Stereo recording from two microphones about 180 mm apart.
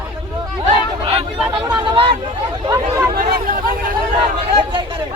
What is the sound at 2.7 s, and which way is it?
Speech, 15° right (ahead or behind).